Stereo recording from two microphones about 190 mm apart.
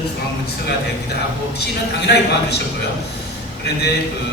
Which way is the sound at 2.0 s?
60° left (ahead or behind).